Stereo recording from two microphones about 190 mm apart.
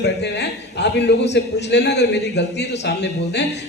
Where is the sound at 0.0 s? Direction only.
65° left (ahead or behind).